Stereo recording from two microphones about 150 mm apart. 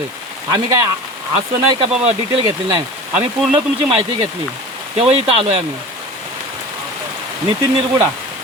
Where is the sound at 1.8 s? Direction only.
40° right (ahead or behind).